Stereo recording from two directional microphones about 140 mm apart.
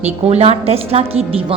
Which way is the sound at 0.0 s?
50° right (ahead or behind).